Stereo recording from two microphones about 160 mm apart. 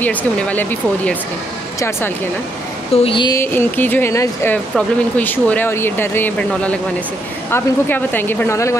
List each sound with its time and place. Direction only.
0.0 s speech: 10° left (ahead or behind)
3.0 s speech: 30° left (ahead or behind)
3.3 s speech: 10° left (ahead or behind)